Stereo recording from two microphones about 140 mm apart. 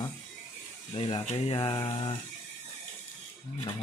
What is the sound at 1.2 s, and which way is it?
Speech, 45° left (ahead or behind).